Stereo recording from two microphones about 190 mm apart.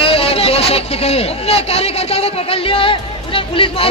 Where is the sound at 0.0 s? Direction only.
30° left (ahead or behind).